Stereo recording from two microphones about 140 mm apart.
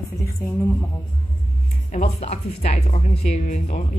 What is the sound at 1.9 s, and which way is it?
Speech, 50° left (ahead or behind).